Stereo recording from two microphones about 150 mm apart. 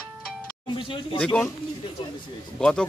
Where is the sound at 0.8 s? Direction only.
35° left (ahead or behind).